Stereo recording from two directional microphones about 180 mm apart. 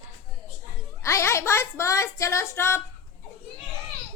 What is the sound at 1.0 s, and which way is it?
Female singing, 15° left (ahead or behind).